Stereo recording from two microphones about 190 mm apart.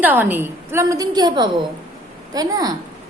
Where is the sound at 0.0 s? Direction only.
10° right (ahead or behind).